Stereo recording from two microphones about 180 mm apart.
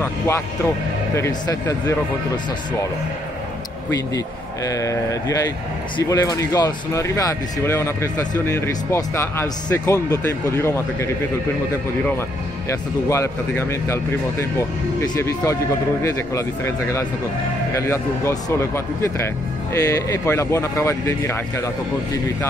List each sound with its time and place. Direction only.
1.1 s speech: 15° left (ahead or behind)
4.6 s speech: 20° left (ahead or behind)
12.6 s speech: 15° left (ahead or behind)